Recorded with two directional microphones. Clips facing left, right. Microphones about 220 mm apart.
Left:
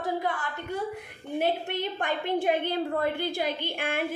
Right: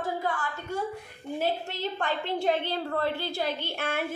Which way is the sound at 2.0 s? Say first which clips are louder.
Left 1 dB; 15° left (ahead or behind).